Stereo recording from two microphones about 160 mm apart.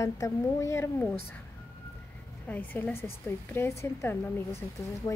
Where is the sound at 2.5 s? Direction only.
10° left (ahead or behind).